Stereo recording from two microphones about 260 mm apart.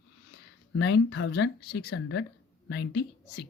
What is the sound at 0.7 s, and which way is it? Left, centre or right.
A woman's voice, left.